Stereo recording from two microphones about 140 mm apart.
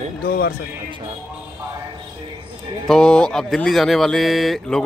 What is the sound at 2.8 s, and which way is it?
A man's voice, 5° left (ahead or behind).